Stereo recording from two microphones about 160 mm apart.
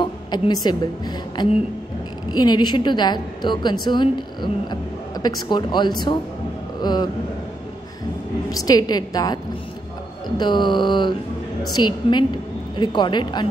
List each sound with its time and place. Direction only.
0.0 s music: 25° left (ahead or behind)
0.7 s speech: 25° left (ahead or behind)
8.5 s speech: 25° left (ahead or behind)